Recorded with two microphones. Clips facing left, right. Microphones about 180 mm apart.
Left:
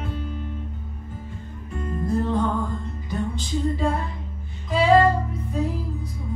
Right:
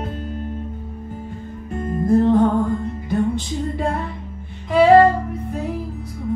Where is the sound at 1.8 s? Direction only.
50° right (ahead or behind).